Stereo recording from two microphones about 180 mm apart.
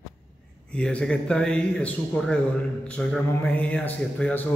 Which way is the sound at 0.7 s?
5° left (ahead or behind).